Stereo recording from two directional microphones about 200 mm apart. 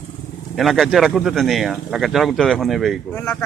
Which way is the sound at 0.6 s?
Centre (ahead or behind).